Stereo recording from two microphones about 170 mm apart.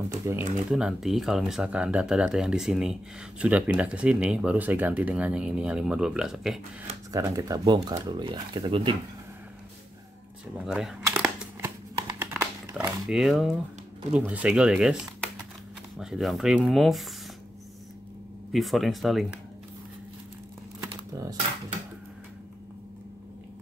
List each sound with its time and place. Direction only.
0.2 s speech: 15° right (ahead or behind)
0.7 s speech: 5° right (ahead or behind)
7.1 s speech: 20° right (ahead or behind)
10.6 s speech: 5° right (ahead or behind)
11.2 s crumpling: 15° right (ahead or behind)
12.7 s speech: 5° right (ahead or behind)
16.0 s speech: centre (ahead or behind)
18.5 s speech: centre (ahead or behind)
20.9 s a sound: 20° right (ahead or behind)